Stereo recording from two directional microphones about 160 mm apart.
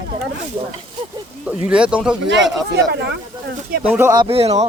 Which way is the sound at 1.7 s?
5° right (ahead or behind).